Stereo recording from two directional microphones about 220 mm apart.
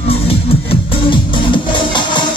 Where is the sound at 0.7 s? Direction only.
20° left (ahead or behind).